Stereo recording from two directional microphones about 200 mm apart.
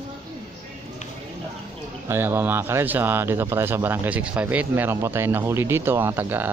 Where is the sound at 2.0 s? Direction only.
10° right (ahead or behind).